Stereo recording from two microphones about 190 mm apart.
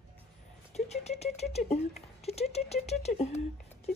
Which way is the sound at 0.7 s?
35° left (ahead or behind).